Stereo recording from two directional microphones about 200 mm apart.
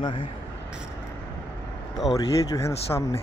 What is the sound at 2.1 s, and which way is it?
Speech, centre (ahead or behind).